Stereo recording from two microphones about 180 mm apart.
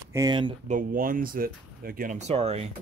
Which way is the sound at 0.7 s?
50° right (ahead or behind).